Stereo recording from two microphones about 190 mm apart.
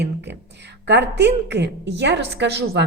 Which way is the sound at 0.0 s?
65° right (ahead or behind).